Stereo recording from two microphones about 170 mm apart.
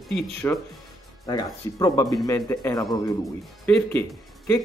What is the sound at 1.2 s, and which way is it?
Speech, 25° left (ahead or behind).